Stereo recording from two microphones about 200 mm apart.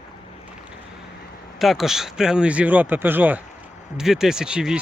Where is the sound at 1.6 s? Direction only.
Centre (ahead or behind).